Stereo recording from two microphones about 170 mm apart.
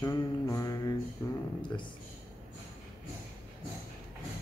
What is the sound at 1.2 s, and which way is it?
Speech, 15° left (ahead or behind).